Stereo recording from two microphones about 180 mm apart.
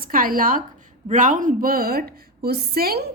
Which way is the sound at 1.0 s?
45° right (ahead or behind).